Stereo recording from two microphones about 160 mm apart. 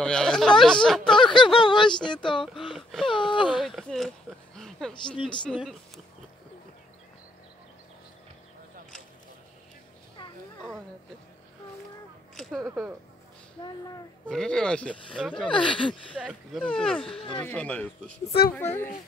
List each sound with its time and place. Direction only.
0.0 s speech: 5° left (ahead or behind)
1.1 s a sound: 30° left (ahead or behind)
2.0 s speech: 30° left (ahead or behind)
2.4 s a sound: centre (ahead or behind)
3.1 s a sound: 30° left (ahead or behind)
3.5 s a sound: centre (ahead or behind)
4.9 s speech: 30° left (ahead or behind)
12.4 s speech: centre (ahead or behind)
13.6 s speech: 25° left (ahead or behind)
14.2 s speech: 5° left (ahead or behind)
15.4 s speech: 30° left (ahead or behind)
16.2 s speech: 5° right (ahead or behind); by 18.9 s 15° left (ahead or behind)